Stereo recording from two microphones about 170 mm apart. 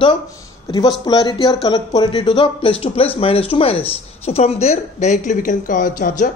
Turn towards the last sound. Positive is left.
turn(degrees=50)  # may be behind; listen again after turning